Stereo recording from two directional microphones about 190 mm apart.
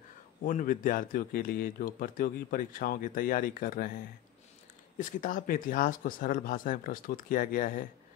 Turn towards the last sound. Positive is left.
turn(degrees=45)  # may be behind; listen again after turning